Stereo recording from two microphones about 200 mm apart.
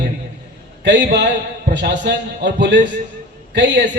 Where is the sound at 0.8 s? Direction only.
60° right (ahead or behind).